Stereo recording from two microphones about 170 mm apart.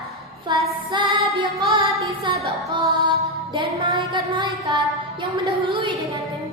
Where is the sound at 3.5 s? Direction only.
30° right (ahead or behind).